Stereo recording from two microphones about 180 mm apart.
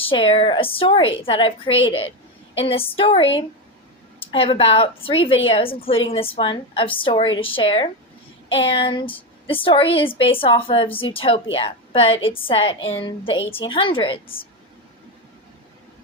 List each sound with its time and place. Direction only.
0.0 s a woman's voice: 30° left (ahead or behind)